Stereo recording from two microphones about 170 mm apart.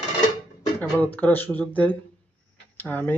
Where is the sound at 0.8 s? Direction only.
10° left (ahead or behind).